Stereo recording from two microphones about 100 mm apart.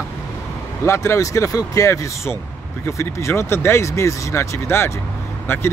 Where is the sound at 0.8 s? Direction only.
30° left (ahead or behind).